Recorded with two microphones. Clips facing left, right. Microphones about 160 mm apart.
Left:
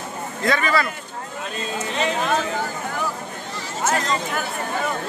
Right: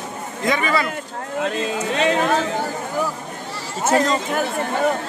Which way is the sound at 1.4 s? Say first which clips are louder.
Right 5 dB; 80° right.